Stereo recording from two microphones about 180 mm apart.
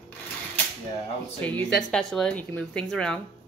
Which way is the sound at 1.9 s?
5° left (ahead or behind).